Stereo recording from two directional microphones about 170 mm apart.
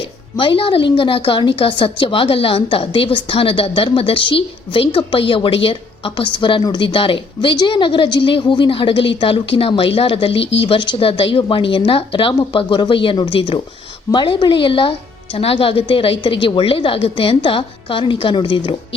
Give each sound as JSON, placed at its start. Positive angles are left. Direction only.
{"t": 0.3, "sound": "a woman's voice", "side_deg": 30}